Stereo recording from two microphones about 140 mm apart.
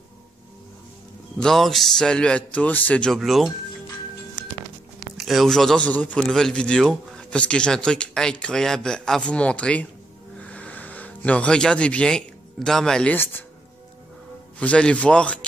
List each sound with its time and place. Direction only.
1.4 s speech: centre (ahead or behind)
5.1 s speech: centre (ahead or behind)
14.6 s speech: 10° left (ahead or behind)